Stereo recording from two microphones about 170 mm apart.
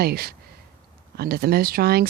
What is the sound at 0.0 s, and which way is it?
Speech, 65° right (ahead or behind).